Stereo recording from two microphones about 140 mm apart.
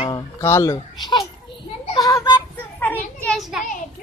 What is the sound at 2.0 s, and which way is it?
Speech, 25° left (ahead or behind).